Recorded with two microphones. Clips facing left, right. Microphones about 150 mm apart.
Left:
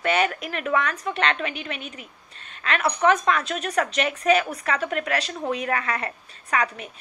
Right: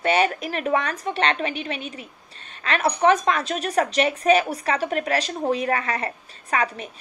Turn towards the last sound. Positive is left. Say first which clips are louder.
# right 1 dB
turn(degrees=-35)  # may be behind; listen again after turning